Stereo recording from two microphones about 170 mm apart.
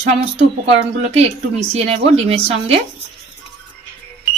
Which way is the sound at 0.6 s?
35° right (ahead or behind).